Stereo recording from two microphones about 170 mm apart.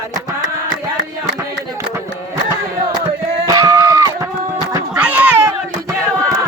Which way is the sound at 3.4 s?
20° right (ahead or behind).